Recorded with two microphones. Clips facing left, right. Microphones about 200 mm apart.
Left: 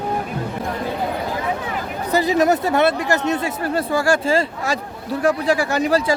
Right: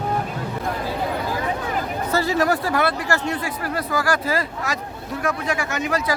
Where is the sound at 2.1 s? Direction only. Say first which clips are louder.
Left 4 dB; 15° left (ahead or behind).